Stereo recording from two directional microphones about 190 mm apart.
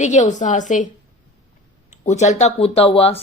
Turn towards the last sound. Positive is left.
turn(degrees=30)  # may be behind; listen again after turning